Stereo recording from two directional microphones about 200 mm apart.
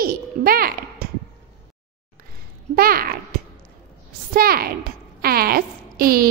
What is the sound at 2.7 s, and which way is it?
Speech, 50° right (ahead or behind).